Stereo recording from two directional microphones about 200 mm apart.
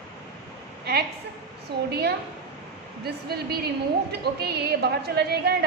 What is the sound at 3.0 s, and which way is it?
A woman's voice, 50° right (ahead or behind).